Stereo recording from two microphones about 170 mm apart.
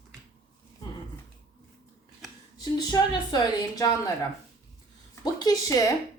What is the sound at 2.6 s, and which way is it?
A woman's voice, 25° left (ahead or behind).